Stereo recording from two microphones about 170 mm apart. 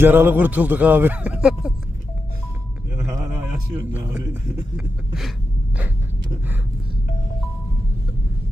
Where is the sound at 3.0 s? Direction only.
20° right (ahead or behind).